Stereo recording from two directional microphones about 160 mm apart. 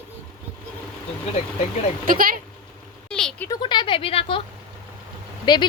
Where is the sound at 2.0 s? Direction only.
60° right (ahead or behind).